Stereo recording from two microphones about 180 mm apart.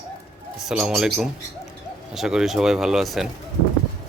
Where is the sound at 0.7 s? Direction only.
5° right (ahead or behind).